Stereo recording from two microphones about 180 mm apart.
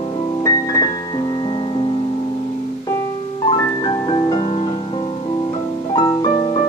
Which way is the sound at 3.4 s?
25° left (ahead or behind).